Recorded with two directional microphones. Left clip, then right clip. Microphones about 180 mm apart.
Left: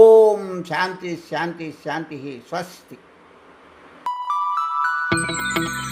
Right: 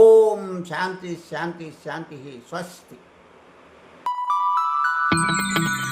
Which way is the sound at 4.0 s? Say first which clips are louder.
Right 1 dB; centre (ahead or behind).